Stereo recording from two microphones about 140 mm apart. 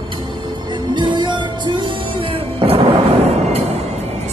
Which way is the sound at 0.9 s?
35° right (ahead or behind).